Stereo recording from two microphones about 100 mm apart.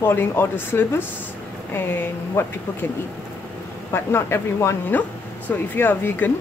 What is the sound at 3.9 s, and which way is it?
Speech, 25° left (ahead or behind).